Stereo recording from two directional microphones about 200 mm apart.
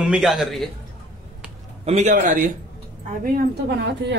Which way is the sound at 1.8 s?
35° right (ahead or behind).